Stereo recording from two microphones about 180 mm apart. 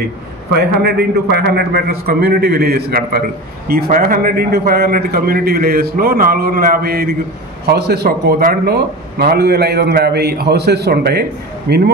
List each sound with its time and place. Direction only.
0.6 s a man's voice: 65° right (ahead or behind)